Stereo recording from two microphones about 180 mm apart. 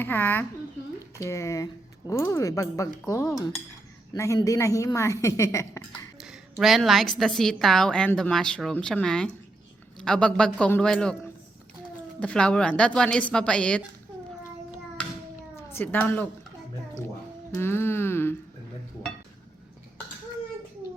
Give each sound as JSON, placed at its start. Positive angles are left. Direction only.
{"t": 0.0, "sound": "speech", "side_deg": 10}
{"t": 3.3, "sound": "cutlery", "side_deg": 20}
{"t": 4.1, "sound": "speech", "side_deg": 20}
{"t": 6.1, "sound": "a woman's voice", "side_deg": 0}
{"t": 12.2, "sound": "a woman's voice", "side_deg": 5}
{"t": 15.5, "sound": "a woman's voice", "side_deg": 10}
{"t": 17.5, "sound": "a sound", "side_deg": 15}